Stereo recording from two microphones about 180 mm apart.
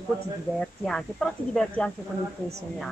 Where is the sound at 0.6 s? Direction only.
5° left (ahead or behind).